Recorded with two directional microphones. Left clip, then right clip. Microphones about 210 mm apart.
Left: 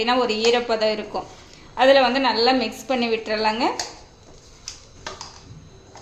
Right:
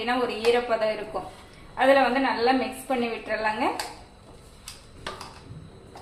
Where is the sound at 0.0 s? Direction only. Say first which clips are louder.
Left 5 dB; 55° left (ahead or behind).